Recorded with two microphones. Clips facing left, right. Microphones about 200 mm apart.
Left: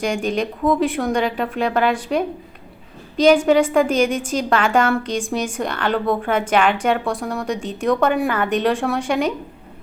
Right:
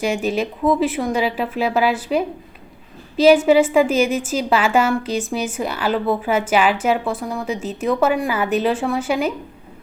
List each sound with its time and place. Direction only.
0.0 s a woman's voice: 5° right (ahead or behind)